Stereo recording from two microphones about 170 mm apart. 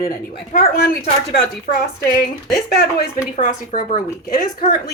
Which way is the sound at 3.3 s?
45° left (ahead or behind).